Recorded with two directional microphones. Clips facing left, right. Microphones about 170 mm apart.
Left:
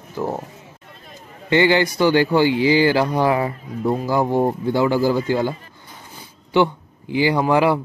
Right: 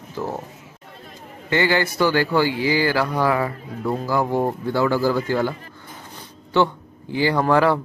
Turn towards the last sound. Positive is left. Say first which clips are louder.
# left 1 dB
turn(degrees=15)  # may be behind; listen again after turning